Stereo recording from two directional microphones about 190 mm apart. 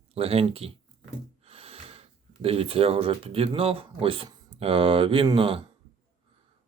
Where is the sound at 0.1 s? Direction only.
30° right (ahead or behind).